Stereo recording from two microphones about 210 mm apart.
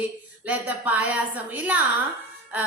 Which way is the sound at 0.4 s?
5° right (ahead or behind).